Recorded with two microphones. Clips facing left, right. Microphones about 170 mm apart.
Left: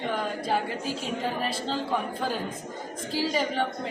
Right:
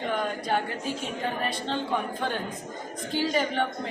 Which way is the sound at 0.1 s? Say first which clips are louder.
Right 1 dB; centre (ahead or behind).